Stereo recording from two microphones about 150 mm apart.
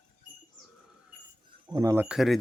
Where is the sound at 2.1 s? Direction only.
Centre (ahead or behind).